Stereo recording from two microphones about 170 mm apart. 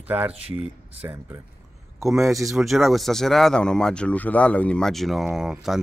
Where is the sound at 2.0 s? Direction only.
Centre (ahead or behind).